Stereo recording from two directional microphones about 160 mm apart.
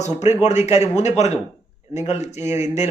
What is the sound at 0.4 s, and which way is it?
Speech, 45° left (ahead or behind).